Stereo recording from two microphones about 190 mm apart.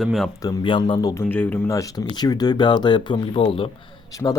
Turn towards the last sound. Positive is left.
turn(degrees=15)  # may be behind; listen again after turning